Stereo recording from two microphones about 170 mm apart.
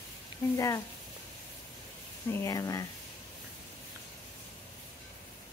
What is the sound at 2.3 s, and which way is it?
Speech, 20° left (ahead or behind).